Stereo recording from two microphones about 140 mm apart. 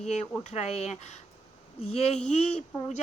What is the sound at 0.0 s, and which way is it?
Speech, 55° left (ahead or behind).